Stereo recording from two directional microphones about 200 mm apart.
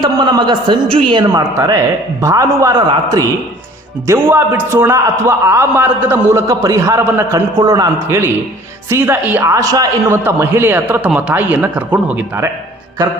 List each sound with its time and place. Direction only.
0.0 s a man's voice: 20° right (ahead or behind)